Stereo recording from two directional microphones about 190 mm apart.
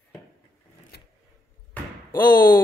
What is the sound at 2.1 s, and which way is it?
Speech, 10° left (ahead or behind).